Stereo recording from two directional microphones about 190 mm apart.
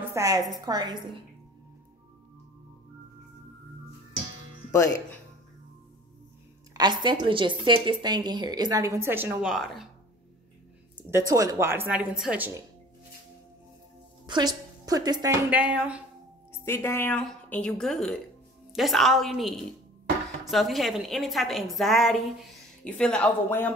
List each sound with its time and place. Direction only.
0.1 s speech: 20° right (ahead or behind)
4.7 s speech: 15° left (ahead or behind)
6.7 s speech: 25° right (ahead or behind); by 9.8 s centre (ahead or behind)
11.0 s a woman's voice: 15° right (ahead or behind)
14.2 s a woman's voice: 20° right (ahead or behind)
15.5 s a woman's voice: 5° right (ahead or behind)
16.5 s a woman's voice: 15° left (ahead or behind)